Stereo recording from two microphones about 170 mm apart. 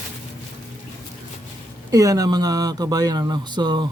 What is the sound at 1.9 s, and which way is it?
Speech, 20° right (ahead or behind).